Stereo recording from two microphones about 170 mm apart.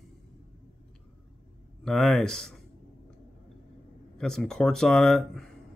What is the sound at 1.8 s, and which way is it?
Speech, centre (ahead or behind).